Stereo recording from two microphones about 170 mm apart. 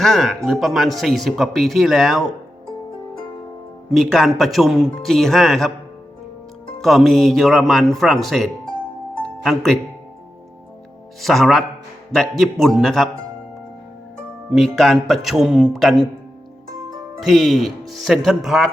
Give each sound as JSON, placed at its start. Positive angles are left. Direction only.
{"t": 0.0, "sound": "speech", "side_deg": 0}
{"t": 3.8, "sound": "speech", "side_deg": 0}
{"t": 6.8, "sound": "speech", "side_deg": 0}
{"t": 11.2, "sound": "speech", "side_deg": 0}
{"t": 14.5, "sound": "speech", "side_deg": 0}
{"t": 17.2, "sound": "speech", "side_deg": 0}